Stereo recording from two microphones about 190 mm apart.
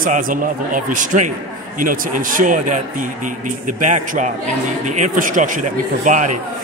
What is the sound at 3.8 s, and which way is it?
A man's voice, 40° right (ahead or behind).